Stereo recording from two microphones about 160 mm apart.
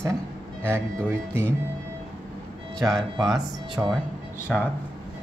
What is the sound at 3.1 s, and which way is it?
Speech, 25° right (ahead or behind).